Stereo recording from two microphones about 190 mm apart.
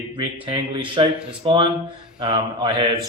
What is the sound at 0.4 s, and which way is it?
Speech, 25° right (ahead or behind).